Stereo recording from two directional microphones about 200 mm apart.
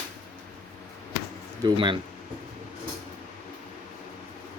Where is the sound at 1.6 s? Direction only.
25° right (ahead or behind).